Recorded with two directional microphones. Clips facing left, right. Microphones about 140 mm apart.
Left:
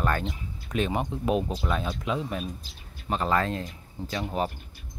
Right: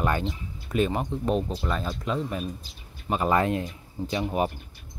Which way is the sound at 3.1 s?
15° right (ahead or behind).